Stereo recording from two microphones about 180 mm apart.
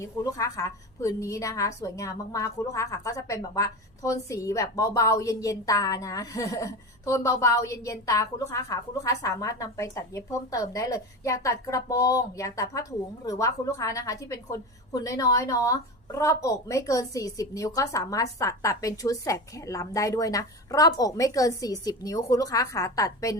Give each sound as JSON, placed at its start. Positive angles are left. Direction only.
{"t": 0.0, "sound": "a woman's voice", "side_deg": 20}